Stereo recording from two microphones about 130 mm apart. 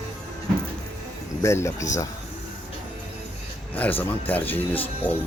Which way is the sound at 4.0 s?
15° left (ahead or behind).